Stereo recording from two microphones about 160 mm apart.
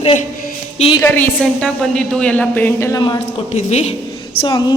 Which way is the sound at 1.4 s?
5° left (ahead or behind).